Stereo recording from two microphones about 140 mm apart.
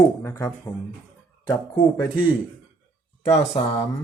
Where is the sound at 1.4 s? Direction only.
35° left (ahead or behind).